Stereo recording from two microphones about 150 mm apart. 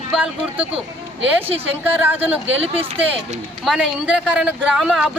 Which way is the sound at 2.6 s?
40° right (ahead or behind).